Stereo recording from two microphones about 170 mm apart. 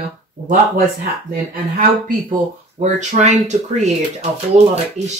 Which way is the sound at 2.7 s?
45° right (ahead or behind).